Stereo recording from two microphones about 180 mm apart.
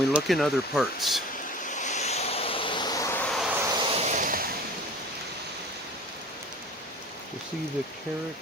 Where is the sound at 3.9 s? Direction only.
40° right (ahead or behind).